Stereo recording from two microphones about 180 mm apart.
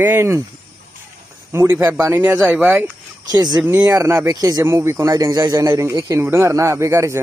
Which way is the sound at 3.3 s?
20° right (ahead or behind).